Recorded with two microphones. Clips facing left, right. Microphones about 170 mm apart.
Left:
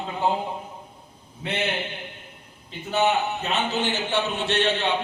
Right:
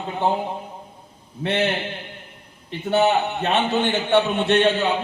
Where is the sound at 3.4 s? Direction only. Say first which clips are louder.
Right 5 dB; 60° right (ahead or behind).